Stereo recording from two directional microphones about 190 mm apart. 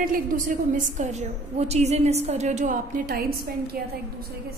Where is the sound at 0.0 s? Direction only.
45° right (ahead or behind).